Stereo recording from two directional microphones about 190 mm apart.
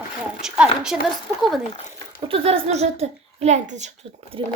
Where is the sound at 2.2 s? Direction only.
30° right (ahead or behind).